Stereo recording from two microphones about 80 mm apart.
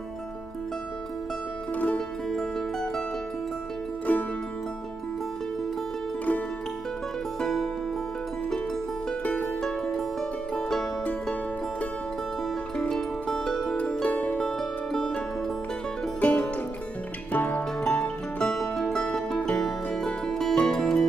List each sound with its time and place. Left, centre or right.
2.0 s music: centre
4.1 s music: centre
7.3 s music: centre
9.6 s music: centre
12.7 s music: centre
16.2 s music: centre